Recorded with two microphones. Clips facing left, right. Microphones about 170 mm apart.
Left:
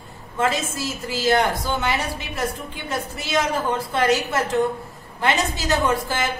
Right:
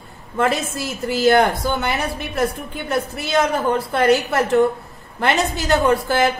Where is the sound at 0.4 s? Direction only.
60° right (ahead or behind).